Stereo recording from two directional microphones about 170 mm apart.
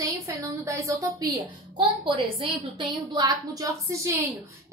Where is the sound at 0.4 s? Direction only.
20° right (ahead or behind).